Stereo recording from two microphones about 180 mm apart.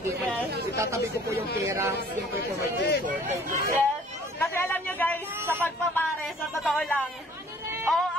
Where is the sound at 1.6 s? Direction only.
15° right (ahead or behind).